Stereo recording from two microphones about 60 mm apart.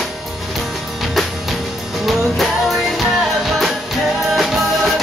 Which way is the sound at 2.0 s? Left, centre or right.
Centre.